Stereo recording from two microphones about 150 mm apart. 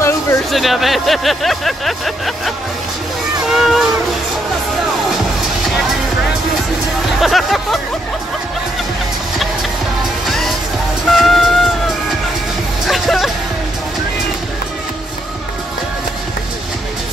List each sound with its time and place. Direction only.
0.5 s speech: centre (ahead or behind)
3.4 s a sound: 5° right (ahead or behind)
7.2 s speech: centre (ahead or behind)
11.1 s train: centre (ahead or behind)
12.8 s music: centre (ahead or behind)